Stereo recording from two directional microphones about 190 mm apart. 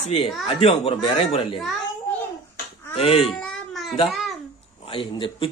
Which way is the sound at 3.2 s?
Centre (ahead or behind).